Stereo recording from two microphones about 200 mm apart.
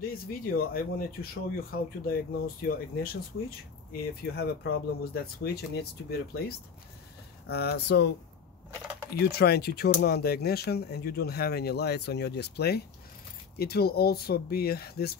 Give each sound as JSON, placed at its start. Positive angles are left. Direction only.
{"t": 0.0, "sound": "speech", "side_deg": 45}
{"t": 9.2, "sound": "speech", "side_deg": 55}